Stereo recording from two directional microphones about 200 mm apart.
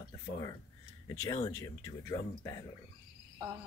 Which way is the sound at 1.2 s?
20° left (ahead or behind).